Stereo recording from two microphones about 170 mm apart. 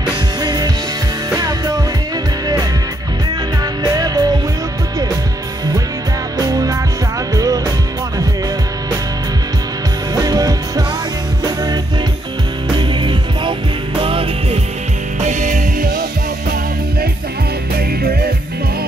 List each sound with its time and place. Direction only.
0.4 s music: 20° right (ahead or behind)
3.8 s music: 20° right (ahead or behind)
6.3 s music: 20° right (ahead or behind)
10.1 s music: 20° right (ahead or behind)
15.2 s music: 50° right (ahead or behind)
17.7 s music: 65° right (ahead or behind)